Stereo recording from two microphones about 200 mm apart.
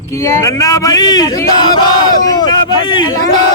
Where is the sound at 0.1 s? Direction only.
15° left (ahead or behind).